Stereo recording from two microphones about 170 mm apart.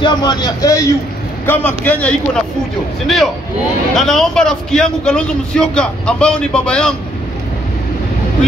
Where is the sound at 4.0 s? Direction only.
Centre (ahead or behind).